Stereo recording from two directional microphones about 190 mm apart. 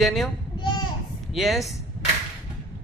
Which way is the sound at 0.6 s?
25° left (ahead or behind).